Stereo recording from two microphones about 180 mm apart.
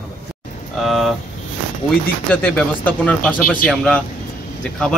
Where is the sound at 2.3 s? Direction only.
5° left (ahead or behind).